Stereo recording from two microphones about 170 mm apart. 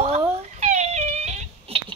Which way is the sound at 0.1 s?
40° right (ahead or behind).